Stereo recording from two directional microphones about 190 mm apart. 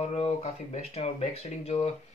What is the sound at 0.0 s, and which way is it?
Speech, 35° left (ahead or behind).